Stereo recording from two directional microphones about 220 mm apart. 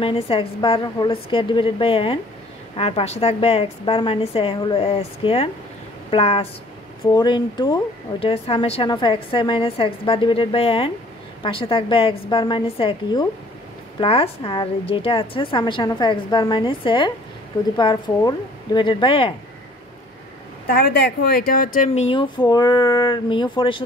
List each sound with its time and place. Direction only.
0.0 s speech: 25° left (ahead or behind)
20.6 s speech: 45° left (ahead or behind); by 23.8 s 20° left (ahead or behind)